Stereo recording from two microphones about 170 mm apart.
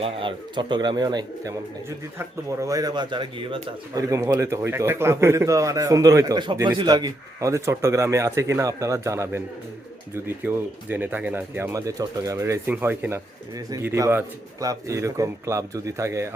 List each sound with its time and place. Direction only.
0.0 s speech: 30° right (ahead or behind)